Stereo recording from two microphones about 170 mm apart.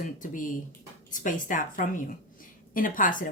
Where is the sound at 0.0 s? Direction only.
50° left (ahead or behind).